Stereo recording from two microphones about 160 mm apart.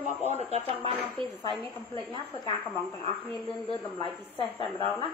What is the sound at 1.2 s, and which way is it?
Speech, 35° right (ahead or behind).